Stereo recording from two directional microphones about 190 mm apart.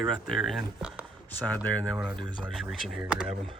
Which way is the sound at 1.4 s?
5° left (ahead or behind).